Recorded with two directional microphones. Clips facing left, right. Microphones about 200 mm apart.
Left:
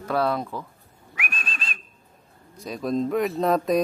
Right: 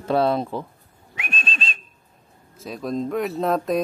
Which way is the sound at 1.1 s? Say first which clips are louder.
Right 3 dB; 25° right (ahead or behind).